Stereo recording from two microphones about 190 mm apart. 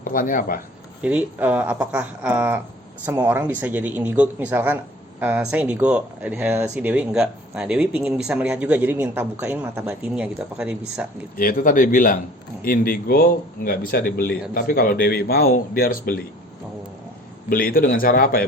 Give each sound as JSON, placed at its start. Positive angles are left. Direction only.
{"t": 0.0, "sound": "speech", "side_deg": 45}
{"t": 1.0, "sound": "speech", "side_deg": -5}
{"t": 11.3, "sound": "speech", "side_deg": 45}
{"t": 17.5, "sound": "speech", "side_deg": 50}